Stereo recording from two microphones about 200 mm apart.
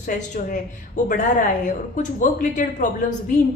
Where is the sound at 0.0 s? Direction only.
40° left (ahead or behind).